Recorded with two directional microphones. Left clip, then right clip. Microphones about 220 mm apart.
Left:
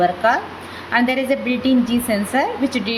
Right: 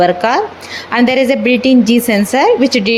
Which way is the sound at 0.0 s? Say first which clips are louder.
Right 5 dB; 40° right (ahead or behind).